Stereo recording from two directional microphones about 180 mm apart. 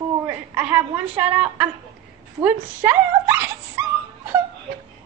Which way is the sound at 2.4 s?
10° right (ahead or behind).